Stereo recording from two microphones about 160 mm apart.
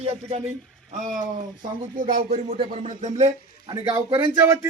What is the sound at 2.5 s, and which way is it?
Speech, 40° right (ahead or behind).